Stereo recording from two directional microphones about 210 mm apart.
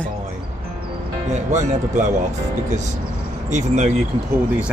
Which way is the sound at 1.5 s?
35° right (ahead or behind).